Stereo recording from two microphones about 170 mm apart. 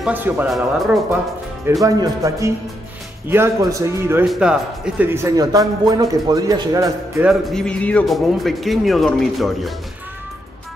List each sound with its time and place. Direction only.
0.0 s a man's voice: 10° right (ahead or behind)
1.7 s a man's voice: 20° right (ahead or behind)
4.3 s speech: 5° right (ahead or behind)
7.2 s speech: centre (ahead or behind)